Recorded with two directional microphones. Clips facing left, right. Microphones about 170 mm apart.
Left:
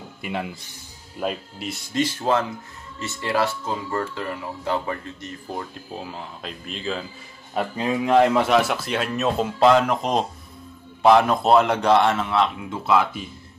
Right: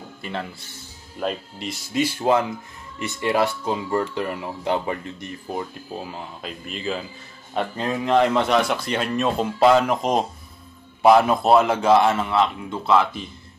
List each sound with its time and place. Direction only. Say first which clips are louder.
0.2 s speech: left 2 dB; 10° left (ahead or behind)
1.2 s speech: even; 5° left (ahead or behind)
2.0 s speech: right 2 dB; 10° right (ahead or behind)
5.5 s speech: right 3 dB; 5° right (ahead or behind)